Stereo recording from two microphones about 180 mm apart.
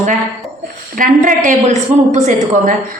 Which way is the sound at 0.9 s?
50° right (ahead or behind).